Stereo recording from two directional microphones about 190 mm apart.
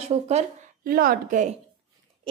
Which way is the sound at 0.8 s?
50° right (ahead or behind).